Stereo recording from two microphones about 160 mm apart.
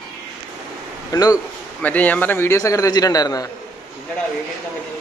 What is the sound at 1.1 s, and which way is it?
Speech, 20° left (ahead or behind).